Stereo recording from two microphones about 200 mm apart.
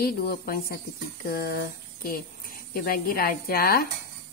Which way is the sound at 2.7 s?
50° left (ahead or behind).